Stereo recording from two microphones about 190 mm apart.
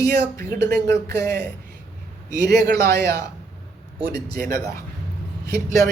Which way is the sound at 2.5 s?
60° right (ahead or behind).